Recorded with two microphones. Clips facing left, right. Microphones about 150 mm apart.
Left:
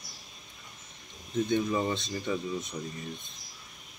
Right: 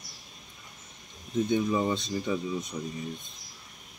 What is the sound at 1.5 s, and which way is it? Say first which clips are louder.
Speech: right 2 dB; 10° right (ahead or behind).